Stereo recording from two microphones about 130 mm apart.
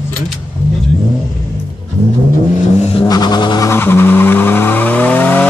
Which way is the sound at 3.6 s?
20° left (ahead or behind).